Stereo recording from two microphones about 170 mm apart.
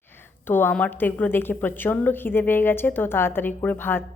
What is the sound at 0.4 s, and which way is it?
A woman's voice, 10° left (ahead or behind).